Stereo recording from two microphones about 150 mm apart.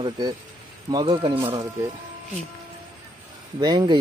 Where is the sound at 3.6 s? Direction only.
30° right (ahead or behind).